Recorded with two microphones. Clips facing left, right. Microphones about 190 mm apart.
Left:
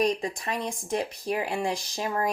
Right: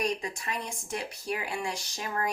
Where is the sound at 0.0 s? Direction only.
35° left (ahead or behind).